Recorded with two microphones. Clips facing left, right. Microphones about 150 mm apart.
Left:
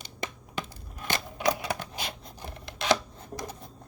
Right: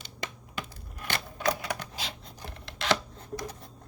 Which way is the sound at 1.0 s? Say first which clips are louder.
Left 2 dB; 15° left (ahead or behind).